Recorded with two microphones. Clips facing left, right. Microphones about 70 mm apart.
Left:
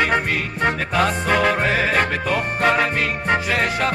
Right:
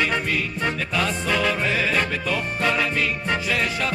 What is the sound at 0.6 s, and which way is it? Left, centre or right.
Music, left.